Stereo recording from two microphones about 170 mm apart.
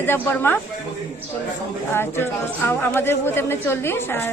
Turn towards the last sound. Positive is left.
turn(degrees=15)  # may be behind; listen again after turning